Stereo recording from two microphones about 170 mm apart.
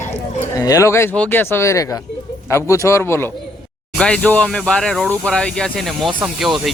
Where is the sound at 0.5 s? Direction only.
20° left (ahead or behind).